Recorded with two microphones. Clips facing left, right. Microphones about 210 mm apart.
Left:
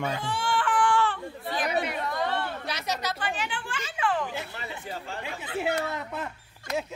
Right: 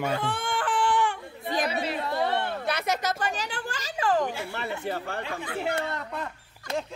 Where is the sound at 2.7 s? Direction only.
55° right (ahead or behind); by 4.2 s 40° right (ahead or behind).